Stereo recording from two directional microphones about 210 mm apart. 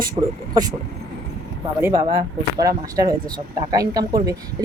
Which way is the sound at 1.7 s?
15° right (ahead or behind).